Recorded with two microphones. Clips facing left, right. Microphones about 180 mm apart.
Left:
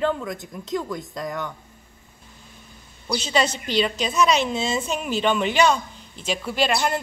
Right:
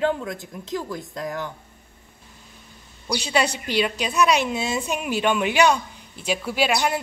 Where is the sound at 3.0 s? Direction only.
15° right (ahead or behind).